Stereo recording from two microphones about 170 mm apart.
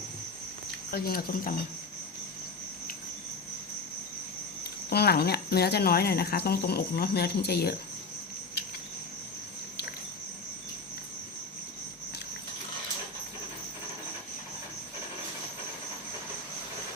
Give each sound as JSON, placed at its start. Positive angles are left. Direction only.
{"t": 0.9, "sound": "speech", "side_deg": 60}
{"t": 4.6, "sound": "speech", "side_deg": 70}